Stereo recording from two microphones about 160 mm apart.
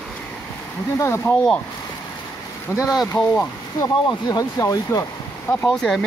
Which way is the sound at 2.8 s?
25° left (ahead or behind).